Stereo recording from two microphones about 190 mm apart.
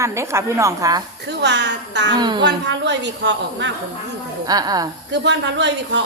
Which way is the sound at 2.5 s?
70° right (ahead or behind).